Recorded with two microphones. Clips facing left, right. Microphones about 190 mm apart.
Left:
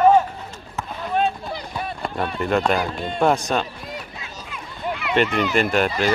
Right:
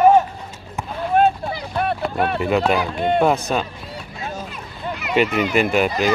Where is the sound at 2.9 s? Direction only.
60° right (ahead or behind).